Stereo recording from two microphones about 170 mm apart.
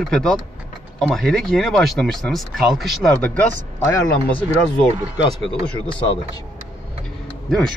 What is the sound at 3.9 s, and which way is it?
Speech, 15° left (ahead or behind).